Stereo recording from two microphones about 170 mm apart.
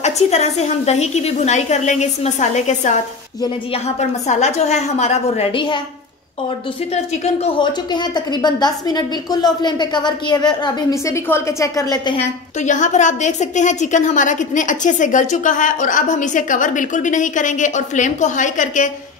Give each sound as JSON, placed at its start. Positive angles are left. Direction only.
{"t": 0.0, "sound": "a woman's voice", "side_deg": 40}
{"t": 7.4, "sound": "a woman's voice", "side_deg": 25}
{"t": 12.6, "sound": "a woman's voice", "side_deg": 45}